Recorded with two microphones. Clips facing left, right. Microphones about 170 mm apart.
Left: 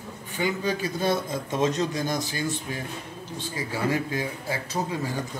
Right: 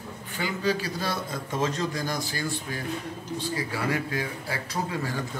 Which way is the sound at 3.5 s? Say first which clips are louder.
Left 3 dB; 20° left (ahead or behind).